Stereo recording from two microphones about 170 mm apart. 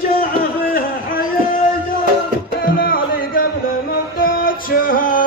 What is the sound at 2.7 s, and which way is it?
Music, 60° left (ahead or behind).